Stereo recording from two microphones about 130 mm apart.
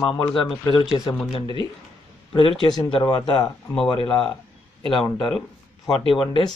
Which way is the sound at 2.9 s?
35° left (ahead or behind).